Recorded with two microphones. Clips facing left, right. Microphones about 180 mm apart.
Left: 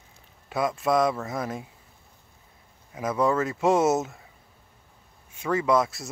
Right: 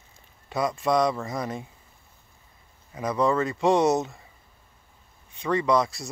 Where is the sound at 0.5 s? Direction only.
Centre (ahead or behind).